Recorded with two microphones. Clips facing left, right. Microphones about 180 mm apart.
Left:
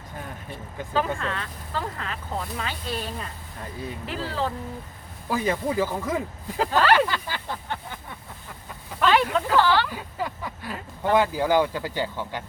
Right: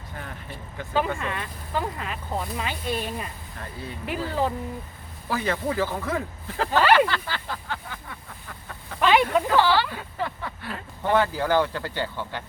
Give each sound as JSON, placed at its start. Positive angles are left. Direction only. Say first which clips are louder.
{"t": 0.9, "sound": "speech", "louder": "even", "side_deg": -10}
{"t": 5.3, "sound": "speech", "louder": "left 1 dB", "side_deg": 15}
{"t": 6.7, "sound": "speech", "louder": "right 1 dB", "side_deg": -10}
{"t": 7.1, "sound": "a sound", "louder": "even", "side_deg": 15}
{"t": 9.0, "sound": "a sound", "louder": "right 1 dB", "side_deg": -10}
{"t": 9.9, "sound": "speech", "louder": "even", "side_deg": 10}